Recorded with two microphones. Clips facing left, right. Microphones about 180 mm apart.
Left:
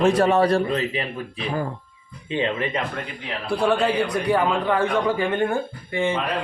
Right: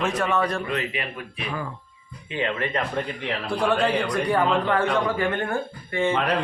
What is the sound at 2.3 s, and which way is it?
Speech, 25° left (ahead or behind).